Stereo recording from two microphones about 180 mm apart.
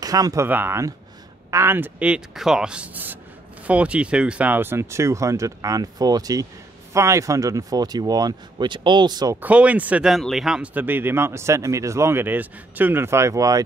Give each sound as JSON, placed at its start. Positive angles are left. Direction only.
{"t": 0.0, "sound": "speech", "side_deg": -20}
{"t": 9.4, "sound": "speech", "side_deg": -5}